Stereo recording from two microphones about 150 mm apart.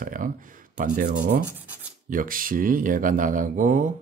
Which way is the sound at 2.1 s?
65° right (ahead or behind).